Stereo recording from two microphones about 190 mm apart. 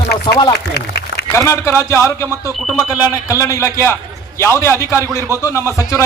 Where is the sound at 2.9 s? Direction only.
15° left (ahead or behind).